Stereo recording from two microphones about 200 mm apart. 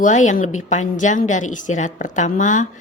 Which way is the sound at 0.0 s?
40° left (ahead or behind).